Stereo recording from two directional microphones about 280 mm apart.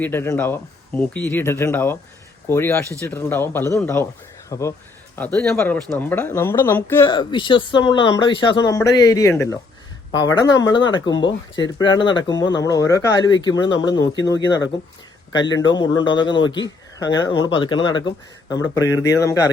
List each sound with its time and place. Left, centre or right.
0.0 s speech: centre
15.7 s speech: centre